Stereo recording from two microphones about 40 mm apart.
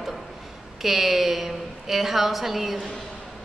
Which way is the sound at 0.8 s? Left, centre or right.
Centre.